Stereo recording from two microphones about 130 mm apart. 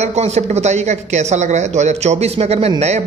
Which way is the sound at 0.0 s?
60° right (ahead or behind).